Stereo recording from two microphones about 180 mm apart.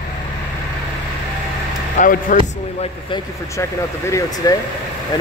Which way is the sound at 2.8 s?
30° left (ahead or behind).